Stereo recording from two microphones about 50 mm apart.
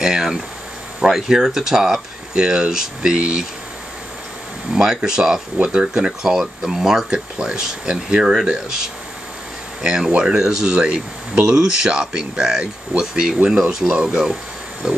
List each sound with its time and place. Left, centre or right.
0.0 s a sound: centre
1.0 s speech: centre
4.7 s speech: centre
6.2 s speech: centre
7.1 s speech: centre
8.2 s speech: centre